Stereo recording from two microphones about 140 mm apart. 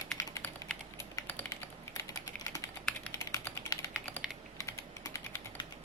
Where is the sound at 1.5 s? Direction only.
20° left (ahead or behind).